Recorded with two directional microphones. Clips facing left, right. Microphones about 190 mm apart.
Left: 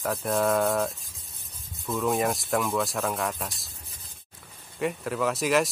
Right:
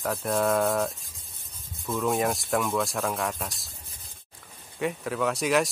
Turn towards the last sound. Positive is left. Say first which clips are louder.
# even
turn(degrees=0)  # may be behind; listen again after turning